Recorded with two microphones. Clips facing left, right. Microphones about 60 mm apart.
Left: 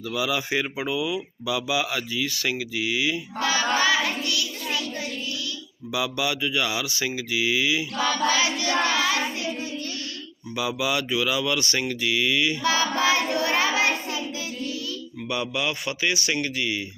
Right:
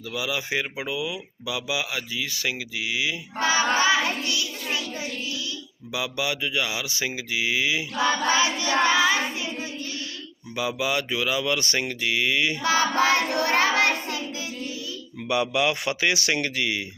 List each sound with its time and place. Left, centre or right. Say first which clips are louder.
0.1 s speech: left 2 dB; centre
3.3 s child singing: right 3 dB; right
5.9 s speech: left 2 dB; right
10.5 s speech: even; right
12.0 s child singing: even; right
15.3 s speech: right 4 dB; right